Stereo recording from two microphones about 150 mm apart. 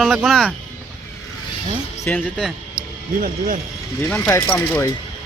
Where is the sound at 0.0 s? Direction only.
5° right (ahead or behind).